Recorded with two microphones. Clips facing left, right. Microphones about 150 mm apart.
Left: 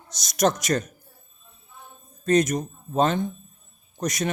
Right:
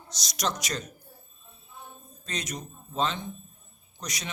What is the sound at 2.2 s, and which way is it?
A man's voice, 50° left (ahead or behind).